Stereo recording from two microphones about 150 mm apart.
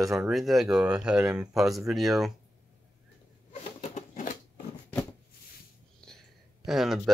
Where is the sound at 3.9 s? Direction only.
60° left (ahead or behind).